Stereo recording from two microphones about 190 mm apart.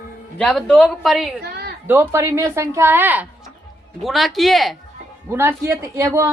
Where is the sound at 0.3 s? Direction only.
5° left (ahead or behind).